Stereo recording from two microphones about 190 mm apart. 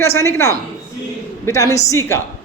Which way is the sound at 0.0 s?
15° left (ahead or behind).